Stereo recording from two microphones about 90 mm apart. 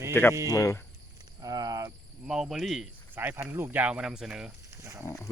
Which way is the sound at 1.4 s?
45° right (ahead or behind).